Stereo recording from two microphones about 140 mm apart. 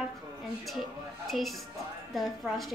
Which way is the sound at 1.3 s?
Centre (ahead or behind).